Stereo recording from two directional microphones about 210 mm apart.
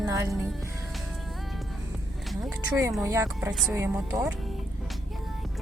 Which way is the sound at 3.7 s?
15° right (ahead or behind).